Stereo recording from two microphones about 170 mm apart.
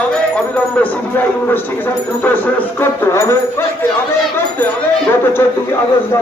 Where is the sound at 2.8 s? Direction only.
15° left (ahead or behind).